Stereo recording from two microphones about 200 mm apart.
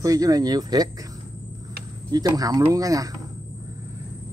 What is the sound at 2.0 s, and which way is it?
Speech, 20° right (ahead or behind).